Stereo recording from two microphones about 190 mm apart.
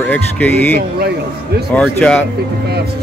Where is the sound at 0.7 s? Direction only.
55° right (ahead or behind).